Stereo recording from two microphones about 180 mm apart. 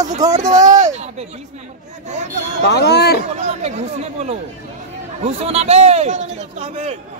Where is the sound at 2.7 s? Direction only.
65° left (ahead or behind).